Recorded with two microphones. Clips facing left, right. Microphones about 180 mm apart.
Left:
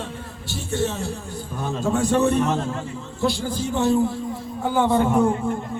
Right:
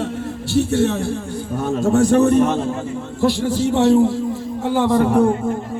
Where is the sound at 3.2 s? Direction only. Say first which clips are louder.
Right 6 dB; 65° right (ahead or behind); by 5.2 s 80° right.